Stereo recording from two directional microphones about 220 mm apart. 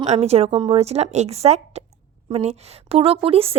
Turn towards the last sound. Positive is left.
turn(degrees=-25)  # may be behind; listen again after turning